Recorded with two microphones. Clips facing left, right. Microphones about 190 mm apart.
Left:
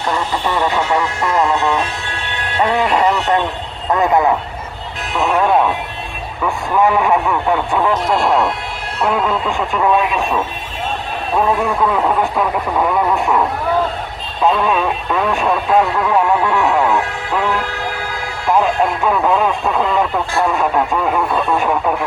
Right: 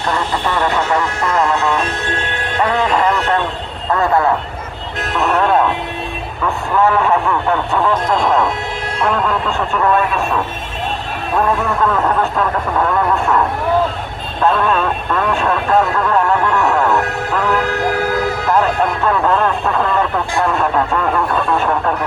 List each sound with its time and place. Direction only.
0.1 s vehicle: 10° left (ahead or behind)
2.6 s speech: 20° left (ahead or behind)
3.9 s speech: 15° left (ahead or behind)
5.3 s music: 10° left (ahead or behind)
6.4 s speech: 10° left (ahead or behind)
14.4 s speech: 10° left (ahead or behind)
17.5 s music: 45° right (ahead or behind)
18.5 s speech: 10° left (ahead or behind)